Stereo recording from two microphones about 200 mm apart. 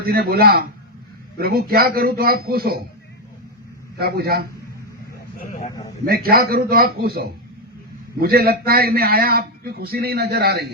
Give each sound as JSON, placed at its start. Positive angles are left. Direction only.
{"t": 0.0, "sound": "a man's voice", "side_deg": -50}
{"t": 3.9, "sound": "a man's voice", "side_deg": -50}
{"t": 5.4, "sound": "speech", "side_deg": 35}
{"t": 6.1, "sound": "a man's voice", "side_deg": -50}